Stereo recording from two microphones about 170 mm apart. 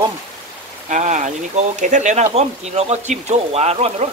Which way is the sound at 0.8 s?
45° right (ahead or behind).